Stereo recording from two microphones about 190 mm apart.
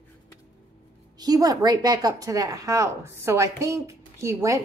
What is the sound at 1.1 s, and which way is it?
A woman's voice, 20° right (ahead or behind).